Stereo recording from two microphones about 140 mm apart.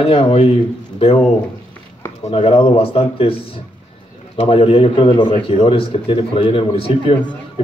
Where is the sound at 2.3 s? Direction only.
45° left (ahead or behind).